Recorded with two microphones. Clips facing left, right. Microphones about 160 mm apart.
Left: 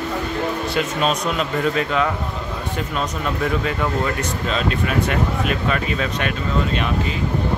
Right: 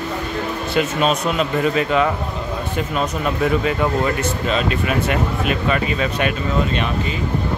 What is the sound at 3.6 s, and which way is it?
Speech, 5° right (ahead or behind).